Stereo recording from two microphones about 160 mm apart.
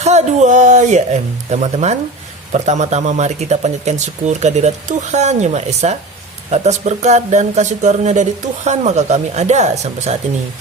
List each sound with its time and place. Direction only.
0.0 s speech: 45° right (ahead or behind)